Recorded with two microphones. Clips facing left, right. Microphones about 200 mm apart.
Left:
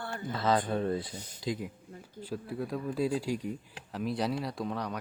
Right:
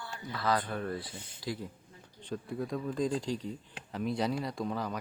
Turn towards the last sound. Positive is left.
turn(degrees=0)  # may be behind; listen again after turning